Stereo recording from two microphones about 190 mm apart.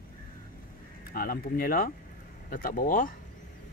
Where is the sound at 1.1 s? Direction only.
50° left (ahead or behind).